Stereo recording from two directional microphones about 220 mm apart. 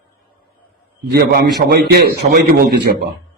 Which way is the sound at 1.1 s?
45° right (ahead or behind).